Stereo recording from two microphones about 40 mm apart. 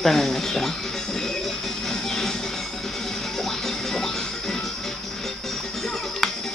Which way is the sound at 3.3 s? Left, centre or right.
Centre.